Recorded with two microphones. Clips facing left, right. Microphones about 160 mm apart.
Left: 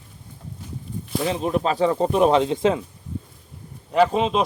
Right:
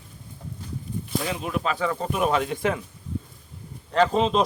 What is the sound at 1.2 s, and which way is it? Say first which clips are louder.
Speech: left 8 dB; 30° left (ahead or behind).